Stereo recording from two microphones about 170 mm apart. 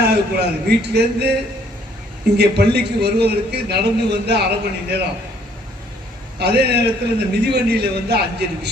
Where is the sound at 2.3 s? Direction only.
75° right (ahead or behind).